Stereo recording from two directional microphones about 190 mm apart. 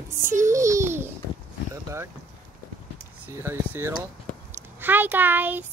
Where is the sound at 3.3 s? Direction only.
10° right (ahead or behind).